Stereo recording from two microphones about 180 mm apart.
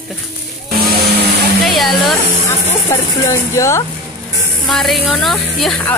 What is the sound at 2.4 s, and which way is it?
Speech, 15° left (ahead or behind).